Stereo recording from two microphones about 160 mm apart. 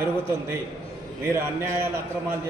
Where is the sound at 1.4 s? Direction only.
15° right (ahead or behind).